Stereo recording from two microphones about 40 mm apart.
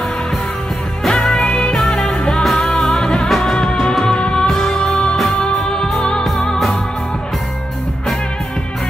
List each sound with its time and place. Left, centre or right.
1.0 s music: centre
1.8 s music: centre
3.3 s music: centre
3.8 s music: centre